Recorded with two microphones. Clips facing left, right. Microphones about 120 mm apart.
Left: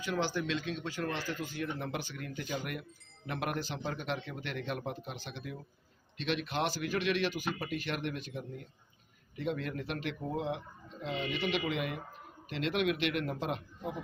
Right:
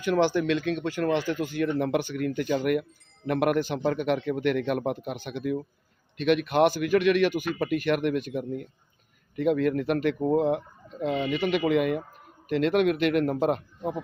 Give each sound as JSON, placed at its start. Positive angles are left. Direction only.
{"t": 0.0, "sound": "a man's voice", "side_deg": -60}